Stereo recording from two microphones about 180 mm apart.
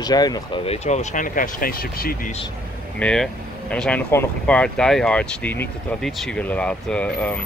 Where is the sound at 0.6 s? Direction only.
40° left (ahead or behind); by 2.3 s 55° left (ahead or behind).